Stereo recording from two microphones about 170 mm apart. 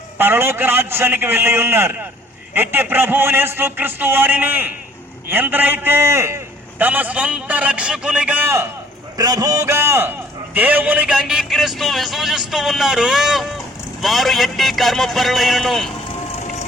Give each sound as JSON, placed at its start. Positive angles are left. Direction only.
{"t": 0.2, "sound": "a man's voice", "side_deg": -10}
{"t": 16.4, "sound": "vehicle", "side_deg": 40}